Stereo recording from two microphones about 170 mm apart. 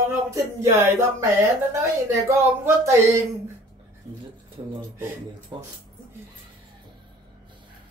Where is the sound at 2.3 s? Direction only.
15° right (ahead or behind).